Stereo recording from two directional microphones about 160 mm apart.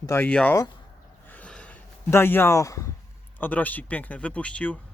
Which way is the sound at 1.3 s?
10° left (ahead or behind).